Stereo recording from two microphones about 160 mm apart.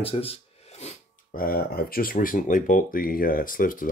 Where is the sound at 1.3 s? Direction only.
65° left (ahead or behind).